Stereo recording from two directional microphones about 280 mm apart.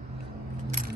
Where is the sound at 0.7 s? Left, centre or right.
Right.